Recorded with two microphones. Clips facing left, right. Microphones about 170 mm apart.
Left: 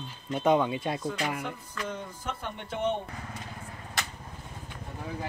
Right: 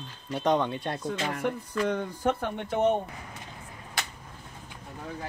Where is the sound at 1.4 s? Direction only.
65° right (ahead or behind); by 3.0 s 50° right (ahead or behind).